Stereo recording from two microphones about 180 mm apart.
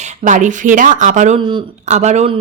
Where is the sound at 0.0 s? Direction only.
45° right (ahead or behind).